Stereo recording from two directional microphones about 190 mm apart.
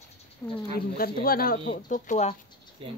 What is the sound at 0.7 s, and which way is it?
Speech, 50° left (ahead or behind).